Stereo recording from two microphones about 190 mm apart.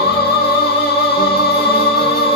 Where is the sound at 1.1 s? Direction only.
55° left (ahead or behind).